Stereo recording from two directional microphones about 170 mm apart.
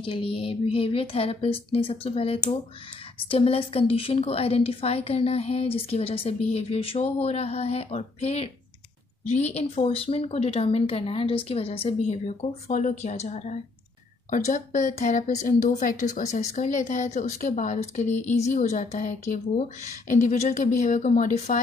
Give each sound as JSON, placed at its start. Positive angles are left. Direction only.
{"t": 0.0, "sound": "a woman's voice", "side_deg": 30}